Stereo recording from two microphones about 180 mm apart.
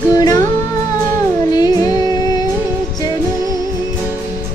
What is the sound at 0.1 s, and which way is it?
Music, 20° left (ahead or behind).